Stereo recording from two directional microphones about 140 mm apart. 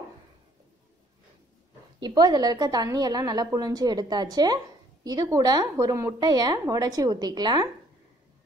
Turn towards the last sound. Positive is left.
turn(degrees=-30)  # may be behind; listen again after turning